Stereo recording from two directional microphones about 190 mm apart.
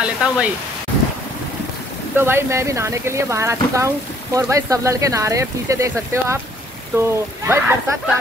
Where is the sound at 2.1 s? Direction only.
10° right (ahead or behind).